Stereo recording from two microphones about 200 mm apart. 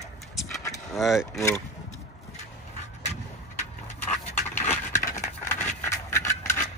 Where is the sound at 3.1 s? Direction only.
35° left (ahead or behind).